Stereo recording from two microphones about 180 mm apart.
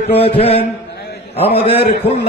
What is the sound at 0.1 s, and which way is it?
A man's voice, 35° left (ahead or behind).